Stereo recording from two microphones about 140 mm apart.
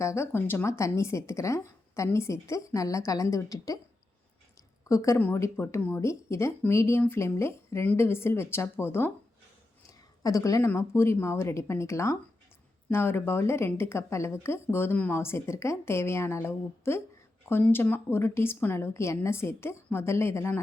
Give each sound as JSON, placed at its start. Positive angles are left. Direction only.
{"t": 0.0, "sound": "a woman's voice", "side_deg": 20}
{"t": 4.9, "sound": "a woman's voice", "side_deg": 20}
{"t": 10.2, "sound": "a woman's voice", "side_deg": 25}